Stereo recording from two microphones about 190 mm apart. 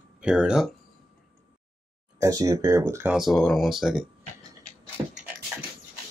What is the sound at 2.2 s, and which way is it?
Speech, 15° right (ahead or behind).